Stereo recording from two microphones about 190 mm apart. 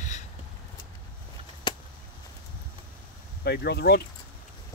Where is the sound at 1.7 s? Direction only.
25° left (ahead or behind).